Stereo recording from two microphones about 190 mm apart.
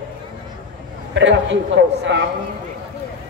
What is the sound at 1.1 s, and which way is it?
A man's voice, 70° right (ahead or behind).